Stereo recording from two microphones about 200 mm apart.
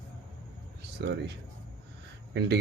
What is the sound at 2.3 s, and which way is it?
Speech, 55° right (ahead or behind).